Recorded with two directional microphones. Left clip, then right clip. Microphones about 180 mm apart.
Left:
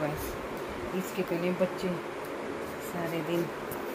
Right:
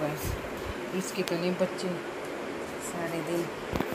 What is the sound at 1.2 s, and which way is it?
Speech, 5° right (ahead or behind).